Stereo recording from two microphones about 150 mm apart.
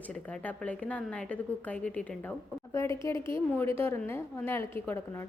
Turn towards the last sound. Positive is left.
turn(degrees=15)  # may be behind; listen again after turning